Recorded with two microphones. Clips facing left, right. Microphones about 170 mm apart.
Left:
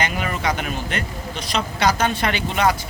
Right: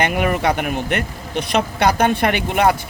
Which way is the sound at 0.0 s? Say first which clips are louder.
Right 6 dB; 55° right (ahead or behind).